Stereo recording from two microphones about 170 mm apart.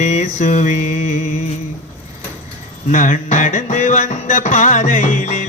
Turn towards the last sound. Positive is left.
turn(degrees=45)  # may be behind; listen again after turning